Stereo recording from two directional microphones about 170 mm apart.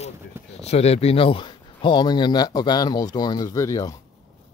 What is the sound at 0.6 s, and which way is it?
Speech, 40° left (ahead or behind).